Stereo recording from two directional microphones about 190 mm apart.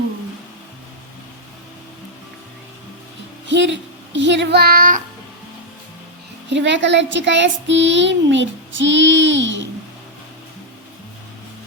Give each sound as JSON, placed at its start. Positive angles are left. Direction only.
{"t": 3.4, "sound": "speech", "side_deg": -70}
{"t": 6.5, "sound": "a child's voice", "side_deg": -70}